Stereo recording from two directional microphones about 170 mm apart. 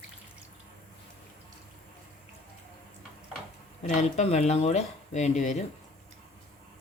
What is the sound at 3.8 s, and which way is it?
Speech, 45° left (ahead or behind).